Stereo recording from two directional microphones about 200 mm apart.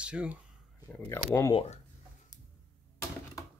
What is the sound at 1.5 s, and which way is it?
Speech, 30° left (ahead or behind).